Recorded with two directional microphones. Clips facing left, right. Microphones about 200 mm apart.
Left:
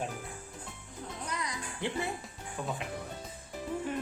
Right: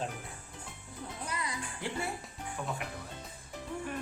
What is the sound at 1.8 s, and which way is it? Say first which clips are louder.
Speech: left 3 dB; 20° left (ahead or behind).